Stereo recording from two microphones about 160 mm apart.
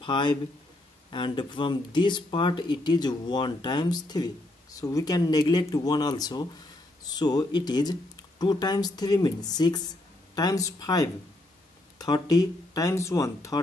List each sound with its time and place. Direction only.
0.0 s speech: 30° left (ahead or behind)